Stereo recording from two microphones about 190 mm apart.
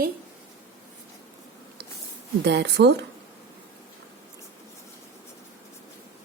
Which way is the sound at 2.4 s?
65° right (ahead or behind).